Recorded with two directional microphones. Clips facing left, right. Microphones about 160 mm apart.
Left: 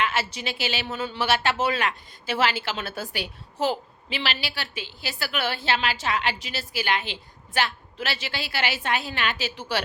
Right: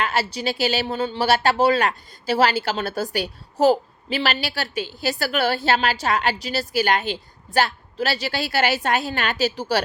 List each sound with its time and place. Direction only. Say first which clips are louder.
0.0 s speech: right 4 dB; 35° right (ahead or behind)